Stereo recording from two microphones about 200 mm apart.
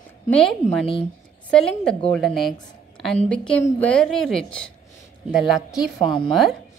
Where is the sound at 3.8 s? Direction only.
5° left (ahead or behind).